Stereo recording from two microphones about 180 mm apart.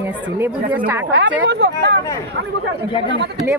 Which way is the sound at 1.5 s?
70° right (ahead or behind).